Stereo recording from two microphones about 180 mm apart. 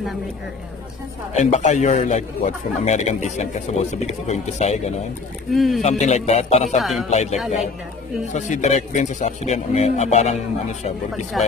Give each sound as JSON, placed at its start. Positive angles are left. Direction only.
{"t": 1.3, "sound": "a man's voice", "side_deg": 45}
{"t": 5.5, "sound": "speech", "side_deg": 0}
{"t": 5.8, "sound": "a man's voice", "side_deg": 40}
{"t": 6.8, "sound": "speech", "side_deg": 0}
{"t": 7.1, "sound": "a man's voice", "side_deg": 40}
{"t": 11.3, "sound": "speech", "side_deg": 0}